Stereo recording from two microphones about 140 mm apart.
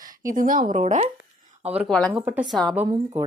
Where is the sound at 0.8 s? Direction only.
50° right (ahead or behind).